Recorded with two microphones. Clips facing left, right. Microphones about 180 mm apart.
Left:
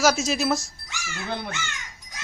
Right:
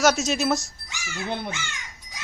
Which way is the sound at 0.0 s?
Centre (ahead or behind).